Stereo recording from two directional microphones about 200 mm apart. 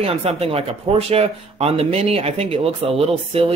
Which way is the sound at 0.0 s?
30° right (ahead or behind).